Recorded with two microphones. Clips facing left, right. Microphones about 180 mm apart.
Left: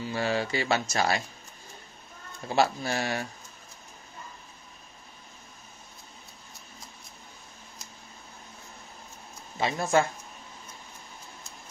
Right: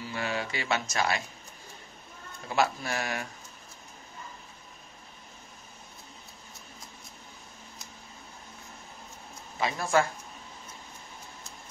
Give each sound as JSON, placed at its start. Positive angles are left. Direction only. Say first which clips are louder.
{"t": 0.1, "sound": "speech", "louder": "left 5 dB", "side_deg": 35}
{"t": 2.5, "sound": "speech", "louder": "left 2 dB", "side_deg": 30}
{"t": 9.6, "sound": "speech", "louder": "left 2 dB", "side_deg": 25}